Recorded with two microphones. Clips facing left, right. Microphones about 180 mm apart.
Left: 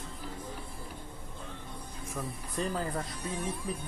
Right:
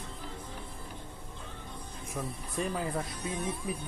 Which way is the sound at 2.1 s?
5° right (ahead or behind).